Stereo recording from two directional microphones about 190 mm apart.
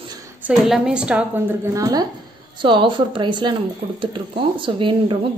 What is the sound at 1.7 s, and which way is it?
A woman's voice, 20° right (ahead or behind).